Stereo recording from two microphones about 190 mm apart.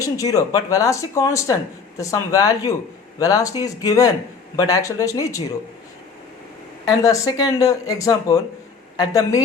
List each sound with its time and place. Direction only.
0.0 s speech: 20° left (ahead or behind)
7.0 s speech: 20° left (ahead or behind)